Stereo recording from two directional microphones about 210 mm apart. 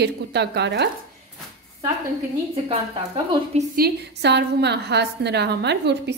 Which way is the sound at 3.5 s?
45° right (ahead or behind).